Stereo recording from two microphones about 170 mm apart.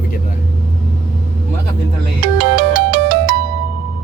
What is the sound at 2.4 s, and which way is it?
Ringtone, 90° right.